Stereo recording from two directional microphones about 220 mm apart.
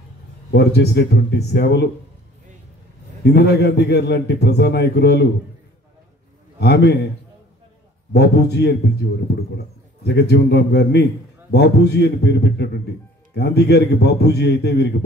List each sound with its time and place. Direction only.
0.5 s a man's voice: 50° left (ahead or behind)
3.3 s a man's voice: 50° left (ahead or behind)
6.6 s a man's voice: 50° left (ahead or behind)
8.1 s a man's voice: 50° left (ahead or behind)
10.0 s a man's voice: 50° left (ahead or behind)